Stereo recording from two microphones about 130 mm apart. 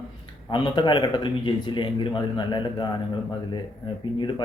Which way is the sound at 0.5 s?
40° left (ahead or behind).